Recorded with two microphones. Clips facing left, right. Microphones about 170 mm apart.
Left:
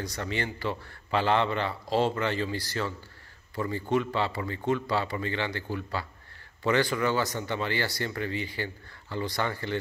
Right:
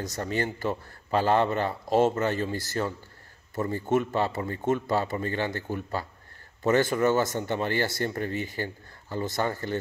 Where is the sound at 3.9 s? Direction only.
45° right (ahead or behind).